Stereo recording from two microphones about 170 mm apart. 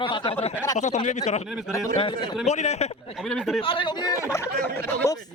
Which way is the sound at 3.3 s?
Centre (ahead or behind).